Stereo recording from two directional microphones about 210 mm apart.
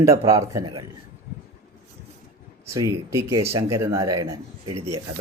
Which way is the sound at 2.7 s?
15° right (ahead or behind).